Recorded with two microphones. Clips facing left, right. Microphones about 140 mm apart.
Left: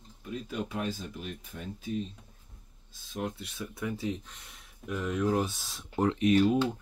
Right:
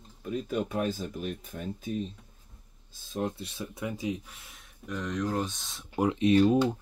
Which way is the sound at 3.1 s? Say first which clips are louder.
Right 3 dB; 35° right (ahead or behind).